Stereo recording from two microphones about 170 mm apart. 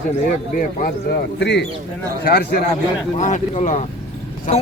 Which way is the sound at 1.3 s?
80° left.